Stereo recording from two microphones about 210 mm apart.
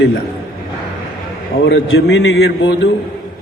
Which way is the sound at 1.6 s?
60° left (ahead or behind).